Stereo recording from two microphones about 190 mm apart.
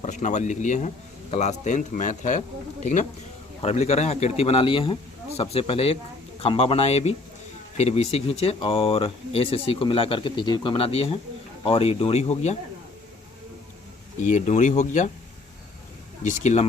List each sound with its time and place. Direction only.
0.0 s speech: 40° left (ahead or behind)
14.3 s speech: 40° left (ahead or behind)
16.2 s speech: 40° left (ahead or behind)